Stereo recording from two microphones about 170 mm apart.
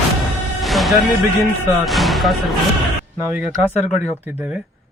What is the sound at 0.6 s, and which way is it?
Music, centre (ahead or behind).